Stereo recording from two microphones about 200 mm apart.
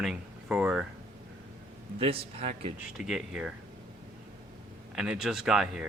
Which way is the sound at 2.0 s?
30° right (ahead or behind).